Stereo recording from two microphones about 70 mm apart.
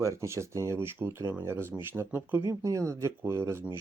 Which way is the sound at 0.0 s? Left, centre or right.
Right.